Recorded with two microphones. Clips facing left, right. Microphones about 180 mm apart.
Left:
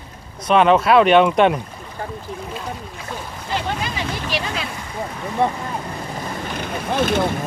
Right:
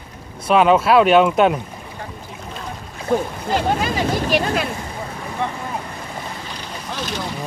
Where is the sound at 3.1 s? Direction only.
45° right (ahead or behind).